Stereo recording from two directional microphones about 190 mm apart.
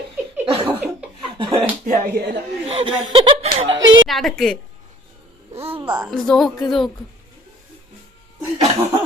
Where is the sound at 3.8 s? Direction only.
80° right.